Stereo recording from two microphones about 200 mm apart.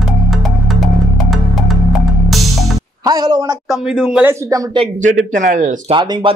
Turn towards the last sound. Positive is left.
turn(degrees=-25)  # may be behind; listen again after turning